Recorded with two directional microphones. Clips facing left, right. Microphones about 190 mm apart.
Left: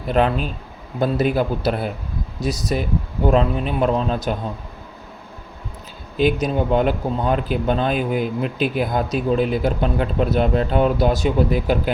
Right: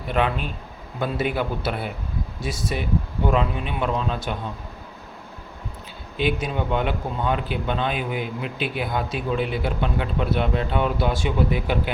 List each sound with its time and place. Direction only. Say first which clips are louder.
0.1 s speech: left 5 dB; 40° left (ahead or behind)
6.1 s speech: left 6 dB; 40° left (ahead or behind)